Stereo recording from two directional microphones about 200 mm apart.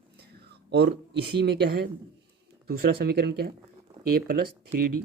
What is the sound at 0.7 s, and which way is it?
Speech, 55° right (ahead or behind).